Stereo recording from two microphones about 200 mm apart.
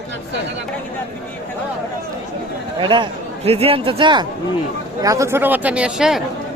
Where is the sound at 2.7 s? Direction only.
25° right (ahead or behind); by 6.2 s 5° right (ahead or behind).